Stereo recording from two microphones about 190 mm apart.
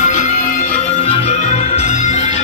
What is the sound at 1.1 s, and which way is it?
Music, 35° left (ahead or behind).